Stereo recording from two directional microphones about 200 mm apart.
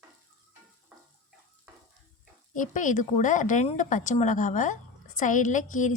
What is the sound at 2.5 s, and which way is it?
Speech, 40° left (ahead or behind).